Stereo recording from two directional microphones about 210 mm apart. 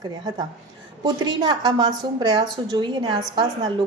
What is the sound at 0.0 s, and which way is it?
A woman's voice, 20° right (ahead or behind).